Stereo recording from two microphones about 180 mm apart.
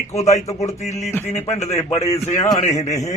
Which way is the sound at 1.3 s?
35° left (ahead or behind).